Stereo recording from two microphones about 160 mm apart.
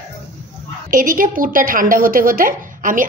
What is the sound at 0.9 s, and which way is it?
A woman's voice, 60° right (ahead or behind).